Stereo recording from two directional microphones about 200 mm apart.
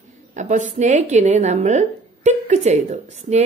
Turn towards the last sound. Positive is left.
turn(degrees=-35)  # may be behind; listen again after turning